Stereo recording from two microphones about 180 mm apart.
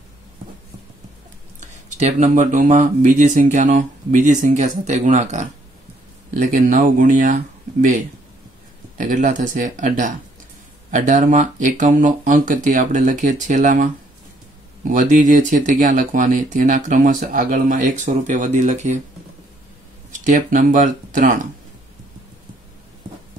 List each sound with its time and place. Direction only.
2.0 s speech: 40° right (ahead or behind)
8.9 s speech: 45° right (ahead or behind)
14.9 s speech: 45° right (ahead or behind)
20.1 s speech: 45° right (ahead or behind)